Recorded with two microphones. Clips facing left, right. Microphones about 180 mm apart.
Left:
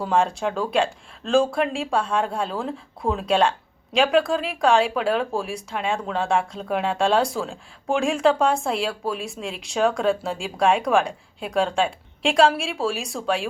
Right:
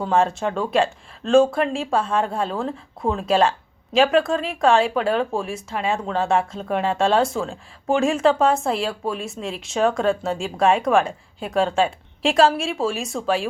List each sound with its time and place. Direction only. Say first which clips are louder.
0.0 s speech: right 2 dB; centre (ahead or behind)